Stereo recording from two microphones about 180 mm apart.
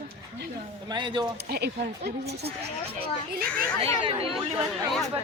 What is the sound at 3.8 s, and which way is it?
Speech, 30° right (ahead or behind).